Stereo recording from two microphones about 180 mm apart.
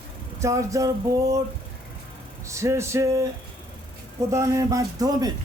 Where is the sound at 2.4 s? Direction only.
15° right (ahead or behind).